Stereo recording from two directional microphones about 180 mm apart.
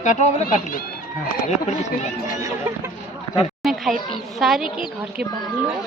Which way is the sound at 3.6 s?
Centre (ahead or behind).